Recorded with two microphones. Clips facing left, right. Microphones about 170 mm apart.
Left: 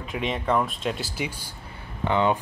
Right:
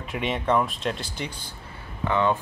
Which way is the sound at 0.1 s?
Centre (ahead or behind).